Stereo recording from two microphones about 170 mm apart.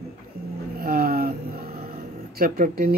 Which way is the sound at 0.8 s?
60° right (ahead or behind).